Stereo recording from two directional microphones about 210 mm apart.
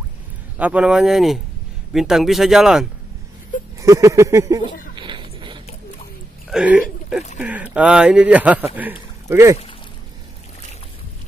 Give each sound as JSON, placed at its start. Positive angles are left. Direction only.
{"t": 0.6, "sound": "speech", "side_deg": -5}
{"t": 3.8, "sound": "speech", "side_deg": -15}
{"t": 4.9, "sound": "a sound", "side_deg": -20}
{"t": 6.5, "sound": "speech", "side_deg": -5}